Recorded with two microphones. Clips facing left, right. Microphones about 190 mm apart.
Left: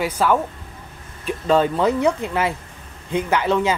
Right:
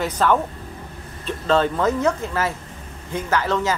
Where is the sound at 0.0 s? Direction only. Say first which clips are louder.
Even; 10° left (ahead or behind).